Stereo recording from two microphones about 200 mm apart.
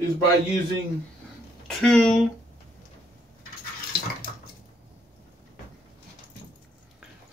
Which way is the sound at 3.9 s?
50° left (ahead or behind).